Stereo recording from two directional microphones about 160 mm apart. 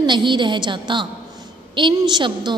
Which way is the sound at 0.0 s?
30° right (ahead or behind).